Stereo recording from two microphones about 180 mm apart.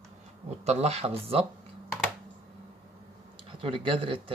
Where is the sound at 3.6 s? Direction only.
30° right (ahead or behind).